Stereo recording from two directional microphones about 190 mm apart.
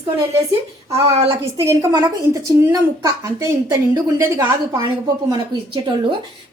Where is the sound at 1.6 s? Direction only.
15° right (ahead or behind).